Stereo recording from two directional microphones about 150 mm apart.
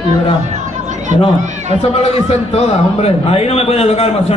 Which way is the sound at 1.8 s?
40° left (ahead or behind).